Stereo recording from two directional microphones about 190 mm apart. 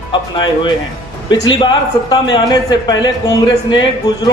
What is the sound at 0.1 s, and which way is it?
Speech, 25° left (ahead or behind).